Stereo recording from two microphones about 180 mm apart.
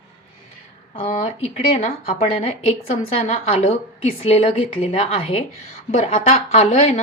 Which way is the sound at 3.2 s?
35° left (ahead or behind).